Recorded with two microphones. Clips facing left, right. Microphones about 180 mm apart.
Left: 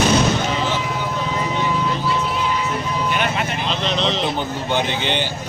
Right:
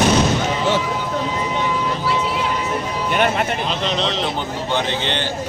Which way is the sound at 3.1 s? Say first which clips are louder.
Right 8 dB; 50° right (ahead or behind).